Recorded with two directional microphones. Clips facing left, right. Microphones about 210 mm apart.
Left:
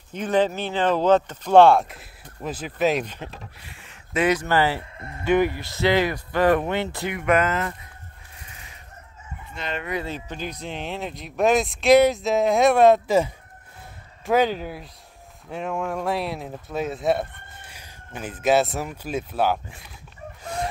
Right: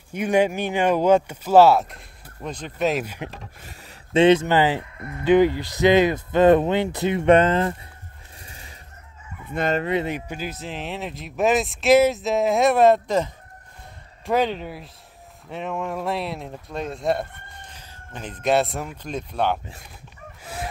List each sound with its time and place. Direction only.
0.1 s speech: 10° right (ahead or behind)
3.6 s a sound: 40° right (ahead or behind)
4.1 s speech: 25° right (ahead or behind)
8.4 s a sound: 35° right (ahead or behind)
9.5 s fowl: 50° right (ahead or behind)
9.8 s speech: 25° right (ahead or behind); by 19.6 s 5° left (ahead or behind)